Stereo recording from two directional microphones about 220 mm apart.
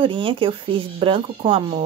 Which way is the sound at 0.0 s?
25° right (ahead or behind).